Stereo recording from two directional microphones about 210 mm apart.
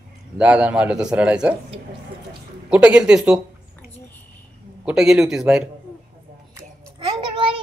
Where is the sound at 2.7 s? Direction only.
5° right (ahead or behind).